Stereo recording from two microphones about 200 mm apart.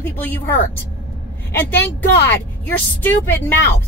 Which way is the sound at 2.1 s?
60° left (ahead or behind).